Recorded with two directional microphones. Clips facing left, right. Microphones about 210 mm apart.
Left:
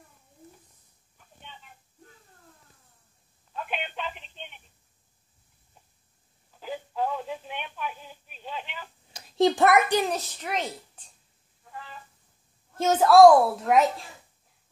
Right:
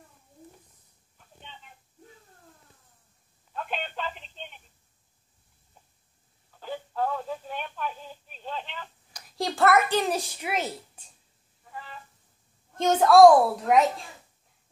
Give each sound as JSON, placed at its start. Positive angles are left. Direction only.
{"t": 3.5, "sound": "telephone", "side_deg": 10}
{"t": 6.6, "sound": "radio", "side_deg": 10}
{"t": 9.1, "sound": "a child's voice", "side_deg": 25}
{"t": 10.0, "sound": "a woman's voice", "side_deg": -10}
{"t": 12.7, "sound": "a woman's voice", "side_deg": 5}